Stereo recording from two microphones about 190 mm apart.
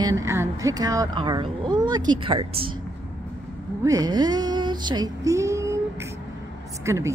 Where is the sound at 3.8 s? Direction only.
20° right (ahead or behind).